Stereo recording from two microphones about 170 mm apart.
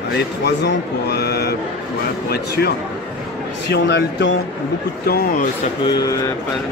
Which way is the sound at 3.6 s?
90° left.